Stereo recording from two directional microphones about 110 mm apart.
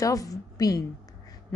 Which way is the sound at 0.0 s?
30° left (ahead or behind).